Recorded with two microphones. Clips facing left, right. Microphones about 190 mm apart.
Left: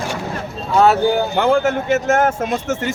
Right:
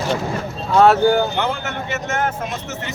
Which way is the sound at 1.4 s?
45° left (ahead or behind).